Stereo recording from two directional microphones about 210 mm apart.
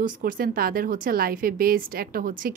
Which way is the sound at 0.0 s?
40° right (ahead or behind).